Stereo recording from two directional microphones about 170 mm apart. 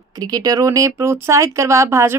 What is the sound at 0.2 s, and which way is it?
Speech, 20° right (ahead or behind).